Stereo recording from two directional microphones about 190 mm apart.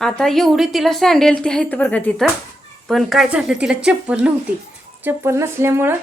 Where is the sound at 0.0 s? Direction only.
Centre (ahead or behind).